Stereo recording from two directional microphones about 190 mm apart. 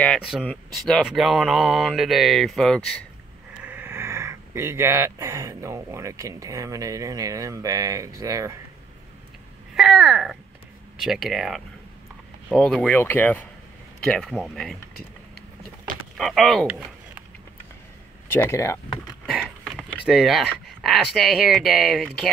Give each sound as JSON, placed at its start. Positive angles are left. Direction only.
{"t": 0.0, "sound": "speech", "side_deg": 0}
{"t": 3.6, "sound": "speech", "side_deg": -10}
{"t": 9.8, "sound": "speech", "side_deg": 0}
{"t": 16.2, "sound": "speech", "side_deg": 0}
{"t": 18.3, "sound": "speech", "side_deg": 10}
{"t": 19.2, "sound": "speech", "side_deg": 0}